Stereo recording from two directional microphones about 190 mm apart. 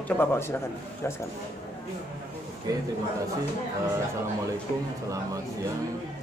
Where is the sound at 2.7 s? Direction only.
20° right (ahead or behind).